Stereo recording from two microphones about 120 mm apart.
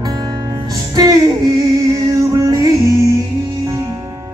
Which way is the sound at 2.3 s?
30° right (ahead or behind).